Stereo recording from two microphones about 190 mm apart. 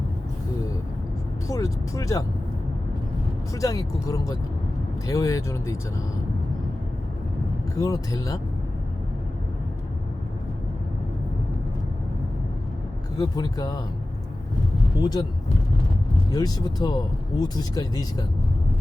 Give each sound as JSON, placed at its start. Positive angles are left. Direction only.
{"t": 1.5, "sound": "speech", "side_deg": 15}
{"t": 3.5, "sound": "speech", "side_deg": 15}
{"t": 7.8, "sound": "speech", "side_deg": 20}
{"t": 13.1, "sound": "speech", "side_deg": 20}
{"t": 14.9, "sound": "speech", "side_deg": 25}
{"t": 16.3, "sound": "speech", "side_deg": 20}